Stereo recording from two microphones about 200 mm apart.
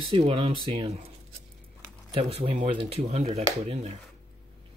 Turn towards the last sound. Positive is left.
turn(degrees=-30)  # may be behind; listen again after turning